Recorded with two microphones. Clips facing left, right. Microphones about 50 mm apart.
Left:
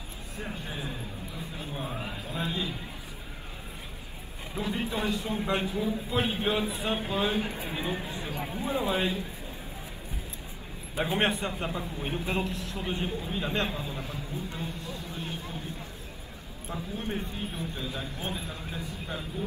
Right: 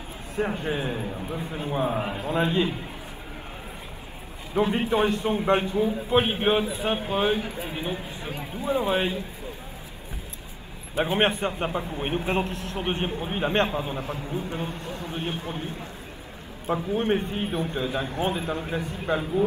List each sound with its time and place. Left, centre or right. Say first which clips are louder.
0.4 s a man's voice: right 11 dB; right
2.0 s a man's voice: right 8 dB; right
2.2 s a man's voice: right 10 dB; right
4.6 s a man's voice: right 9 dB; right
8.6 s a man's voice: right 5 dB; right
11.0 s a man's voice: right 4 dB; right